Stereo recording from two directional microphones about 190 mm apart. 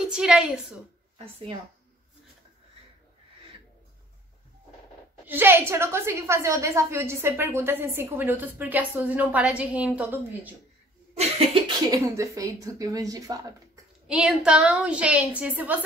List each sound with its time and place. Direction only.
0.1 s a woman's voice: 5° right (ahead or behind)
1.1 s speech: 30° right (ahead or behind)
5.2 s a woman's voice: 10° right (ahead or behind)
11.1 s cough: 30° right (ahead or behind)
11.9 s speech: 15° right (ahead or behind)
14.0 s a woman's voice: 5° right (ahead or behind)